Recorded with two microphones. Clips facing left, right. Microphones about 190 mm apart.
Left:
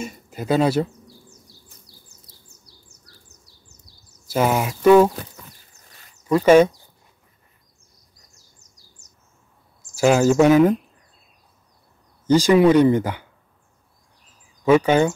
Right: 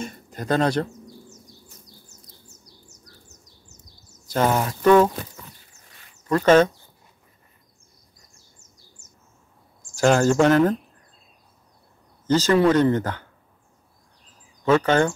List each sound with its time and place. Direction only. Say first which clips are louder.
0.0 s speech: left 2 dB; 5° left (ahead or behind)
2.6 s bird: right 3 dB; 30° left (ahead or behind)
4.3 s speech: left 1 dB; 5° left (ahead or behind)
6.2 s speech: left 3 dB; 10° left (ahead or behind)
8.7 s bird: right 2 dB; 35° left (ahead or behind)
9.9 s speech: left 2 dB; 5° left (ahead or behind)
12.3 s speech: left 4 dB; 10° left (ahead or behind)
14.6 s speech: left 3 dB; 10° left (ahead or behind)